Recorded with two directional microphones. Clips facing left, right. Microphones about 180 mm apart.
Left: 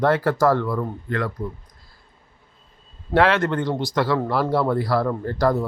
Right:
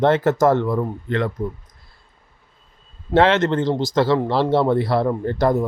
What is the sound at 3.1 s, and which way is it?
Speech, 20° right (ahead or behind).